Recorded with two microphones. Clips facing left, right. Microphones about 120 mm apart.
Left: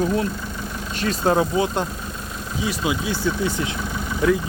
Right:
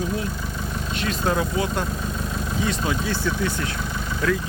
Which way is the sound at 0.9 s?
35° left (ahead or behind).